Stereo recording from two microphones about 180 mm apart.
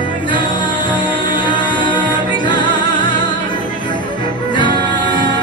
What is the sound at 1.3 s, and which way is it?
Music, 25° left (ahead or behind).